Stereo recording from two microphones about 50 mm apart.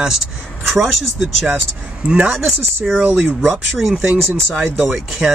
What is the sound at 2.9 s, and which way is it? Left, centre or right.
Speech, right.